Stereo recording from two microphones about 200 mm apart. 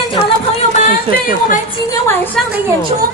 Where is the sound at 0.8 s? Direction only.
40° left (ahead or behind).